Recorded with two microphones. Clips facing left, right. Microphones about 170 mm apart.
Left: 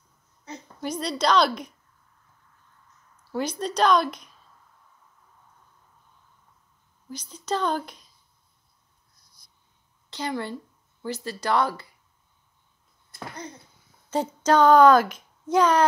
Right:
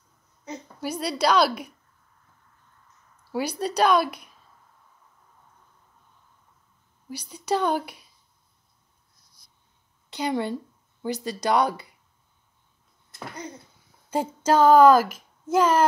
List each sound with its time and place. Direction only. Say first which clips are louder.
0.7 s speech: right 1 dB; 5° right (ahead or behind)
3.3 s speech: right 1 dB; 10° right (ahead or behind)
7.1 s speech: right 3 dB; 10° right (ahead or behind)
10.0 s a woman's voice: right 4 dB; 15° right (ahead or behind)
14.1 s a child's voice: even; 10° right (ahead or behind)